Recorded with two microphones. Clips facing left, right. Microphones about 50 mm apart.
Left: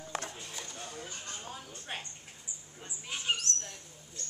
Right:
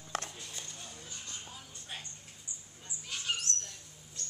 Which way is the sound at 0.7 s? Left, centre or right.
Left.